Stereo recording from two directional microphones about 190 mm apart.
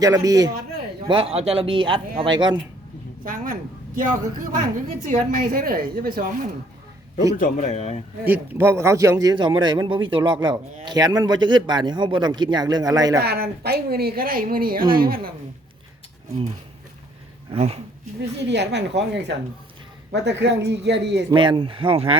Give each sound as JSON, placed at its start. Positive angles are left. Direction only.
{"t": 0.0, "sound": "a man's voice", "side_deg": -20}
{"t": 3.2, "sound": "a woman's voice", "side_deg": -45}
{"t": 7.3, "sound": "speech", "side_deg": 40}
{"t": 8.2, "sound": "a man's voice", "side_deg": -10}
{"t": 13.1, "sound": "a woman's voice", "side_deg": -55}
{"t": 17.5, "sound": "speech", "side_deg": -30}
{"t": 18.0, "sound": "a woman's voice", "side_deg": -65}
{"t": 21.2, "sound": "a man's voice", "side_deg": -25}